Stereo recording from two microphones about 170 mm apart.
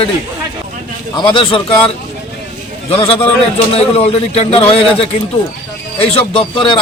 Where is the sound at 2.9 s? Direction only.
35° left (ahead or behind).